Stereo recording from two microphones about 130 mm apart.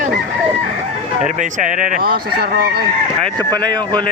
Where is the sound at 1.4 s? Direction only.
75° right (ahead or behind).